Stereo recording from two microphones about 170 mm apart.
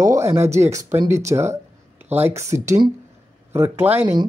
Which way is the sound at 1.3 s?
15° right (ahead or behind).